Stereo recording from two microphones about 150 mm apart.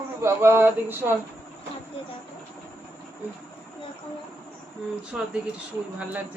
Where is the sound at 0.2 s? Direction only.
15° right (ahead or behind).